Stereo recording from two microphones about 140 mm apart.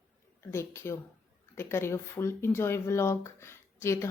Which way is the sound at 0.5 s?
20° left (ahead or behind).